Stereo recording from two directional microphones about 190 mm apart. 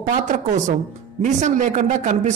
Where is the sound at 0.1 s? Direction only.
40° right (ahead or behind).